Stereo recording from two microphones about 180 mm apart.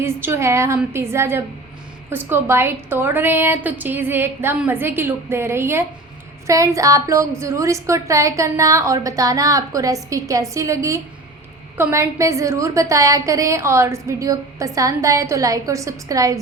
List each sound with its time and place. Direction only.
0.0 s a woman's voice: 15° right (ahead or behind)